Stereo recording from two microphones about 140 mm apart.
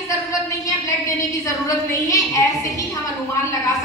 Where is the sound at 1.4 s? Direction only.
25° left (ahead or behind).